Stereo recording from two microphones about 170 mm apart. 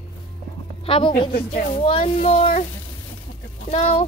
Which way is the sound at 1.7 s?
30° left (ahead or behind).